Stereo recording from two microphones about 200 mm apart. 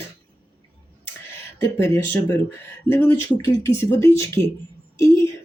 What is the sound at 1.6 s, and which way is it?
Speech, 15° left (ahead or behind).